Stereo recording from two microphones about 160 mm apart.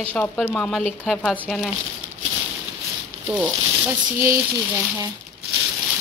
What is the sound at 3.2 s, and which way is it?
A woman's voice, 10° right (ahead or behind).